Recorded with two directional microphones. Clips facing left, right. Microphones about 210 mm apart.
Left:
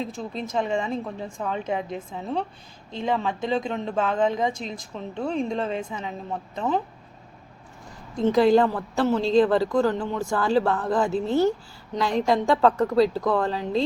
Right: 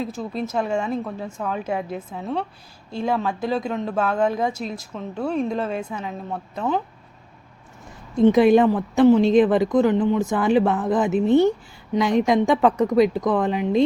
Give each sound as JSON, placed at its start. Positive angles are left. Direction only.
{"t": 0.0, "sound": "a woman's voice", "side_deg": -5}
{"t": 8.2, "sound": "a woman's voice", "side_deg": -20}